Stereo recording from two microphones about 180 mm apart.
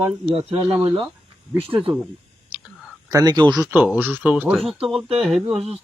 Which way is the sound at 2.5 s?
10° right (ahead or behind).